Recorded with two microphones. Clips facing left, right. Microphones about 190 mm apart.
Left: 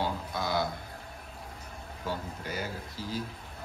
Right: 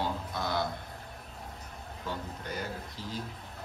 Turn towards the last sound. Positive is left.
turn(degrees=5)  # may be behind; listen again after turning